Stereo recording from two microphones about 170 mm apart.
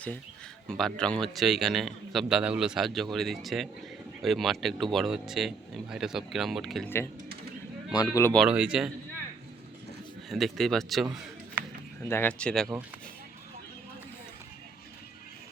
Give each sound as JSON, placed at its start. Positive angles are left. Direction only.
{"t": 0.7, "sound": "a man's voice", "side_deg": 5}
{"t": 7.9, "sound": "speech", "side_deg": 20}
{"t": 8.4, "sound": "a man's voice", "side_deg": -5}
{"t": 10.2, "sound": "a man's voice", "side_deg": 0}
{"t": 12.0, "sound": "a man's voice", "side_deg": 15}